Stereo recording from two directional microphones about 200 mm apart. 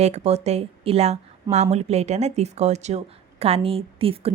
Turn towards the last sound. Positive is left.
turn(degrees=-30)  # may be behind; listen again after turning